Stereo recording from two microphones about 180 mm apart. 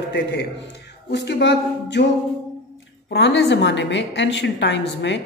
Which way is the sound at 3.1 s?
75° left (ahead or behind).